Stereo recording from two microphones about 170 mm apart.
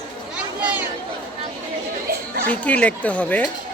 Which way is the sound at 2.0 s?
60° right (ahead or behind).